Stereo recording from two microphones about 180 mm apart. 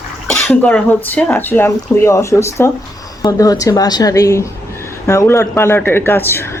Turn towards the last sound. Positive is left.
turn(degrees=10)  # may be behind; listen again after turning